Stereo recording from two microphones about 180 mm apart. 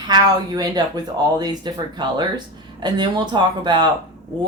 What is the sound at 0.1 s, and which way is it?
Speech, 20° right (ahead or behind).